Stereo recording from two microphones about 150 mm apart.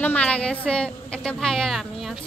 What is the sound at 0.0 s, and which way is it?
A woman's voice, 10° left (ahead or behind).